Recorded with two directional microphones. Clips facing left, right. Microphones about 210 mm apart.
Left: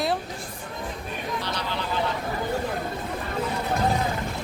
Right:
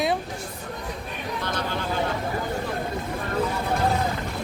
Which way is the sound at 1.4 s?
50° right (ahead or behind).